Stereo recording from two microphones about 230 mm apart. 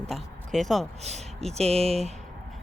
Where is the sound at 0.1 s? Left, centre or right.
Centre.